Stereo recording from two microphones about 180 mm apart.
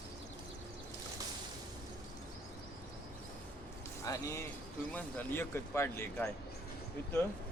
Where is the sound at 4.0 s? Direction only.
15° left (ahead or behind).